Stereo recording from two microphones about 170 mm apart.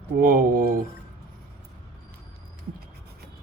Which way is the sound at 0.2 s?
55° right (ahead or behind).